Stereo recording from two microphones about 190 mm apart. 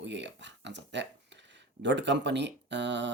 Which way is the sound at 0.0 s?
70° right (ahead or behind).